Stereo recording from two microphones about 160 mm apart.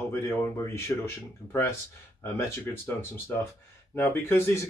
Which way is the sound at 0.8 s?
20° left (ahead or behind).